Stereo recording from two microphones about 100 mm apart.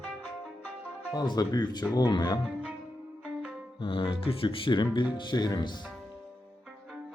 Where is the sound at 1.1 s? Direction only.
40° left (ahead or behind).